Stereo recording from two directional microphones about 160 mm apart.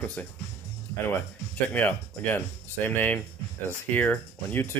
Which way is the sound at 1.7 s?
10° left (ahead or behind).